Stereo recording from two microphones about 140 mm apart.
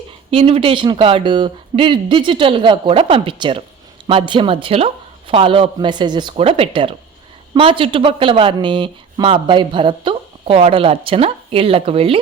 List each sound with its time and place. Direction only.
0.3 s speech: 40° right (ahead or behind)